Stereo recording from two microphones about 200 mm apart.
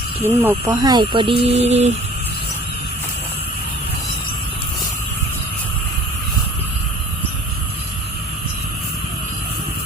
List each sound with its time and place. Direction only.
0.3 s speech: 10° right (ahead or behind); by 1.9 s 30° right (ahead or behind)